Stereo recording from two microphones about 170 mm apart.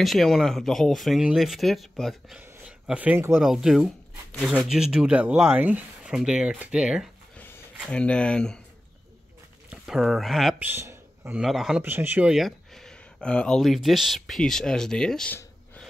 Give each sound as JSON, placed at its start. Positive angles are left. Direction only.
{"t": 0.0, "sound": "speech", "side_deg": 0}
{"t": 7.8, "sound": "speech", "side_deg": 5}
{"t": 9.7, "sound": "speech", "side_deg": -5}
{"t": 10.6, "sound": "speech", "side_deg": -15}
{"t": 11.4, "sound": "speech", "side_deg": 0}
{"t": 11.8, "sound": "speech", "side_deg": -10}